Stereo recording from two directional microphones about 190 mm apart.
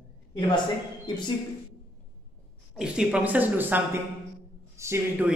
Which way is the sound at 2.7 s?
5° right (ahead or behind).